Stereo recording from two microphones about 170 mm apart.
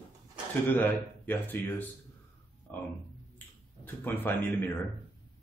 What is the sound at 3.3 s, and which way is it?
Finger snapping, 10° left (ahead or behind).